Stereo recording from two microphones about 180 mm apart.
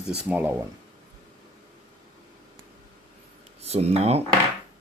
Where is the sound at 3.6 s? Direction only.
35° right (ahead or behind).